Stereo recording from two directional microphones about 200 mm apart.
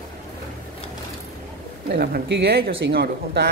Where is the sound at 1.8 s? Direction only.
50° right (ahead or behind).